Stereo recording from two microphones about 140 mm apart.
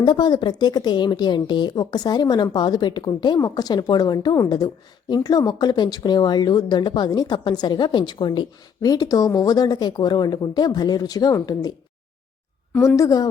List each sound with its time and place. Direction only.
0.0 s a woman's voice: 30° left (ahead or behind)
13.0 s a woman's voice: 25° left (ahead or behind)